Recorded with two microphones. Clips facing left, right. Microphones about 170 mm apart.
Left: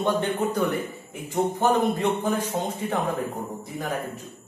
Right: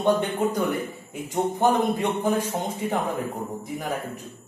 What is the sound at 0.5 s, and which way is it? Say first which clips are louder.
A man's voice: even; 15° right (ahead or behind).